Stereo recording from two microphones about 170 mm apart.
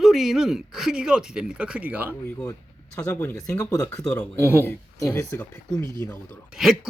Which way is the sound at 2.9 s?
10° left (ahead or behind).